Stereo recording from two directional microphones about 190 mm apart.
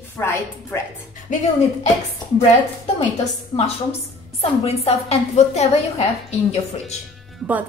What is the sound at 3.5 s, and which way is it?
A woman's voice, 35° left (ahead or behind).